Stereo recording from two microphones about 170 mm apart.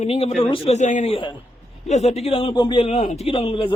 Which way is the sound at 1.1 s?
30° left (ahead or behind).